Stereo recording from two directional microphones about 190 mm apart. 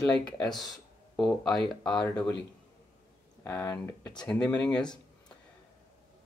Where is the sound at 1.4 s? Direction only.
Centre (ahead or behind).